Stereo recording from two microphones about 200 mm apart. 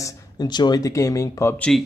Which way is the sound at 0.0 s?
20° left (ahead or behind).